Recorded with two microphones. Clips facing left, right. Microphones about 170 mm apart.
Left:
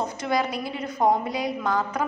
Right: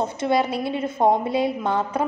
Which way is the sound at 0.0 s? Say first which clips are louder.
Right 4 dB; 25° right (ahead or behind).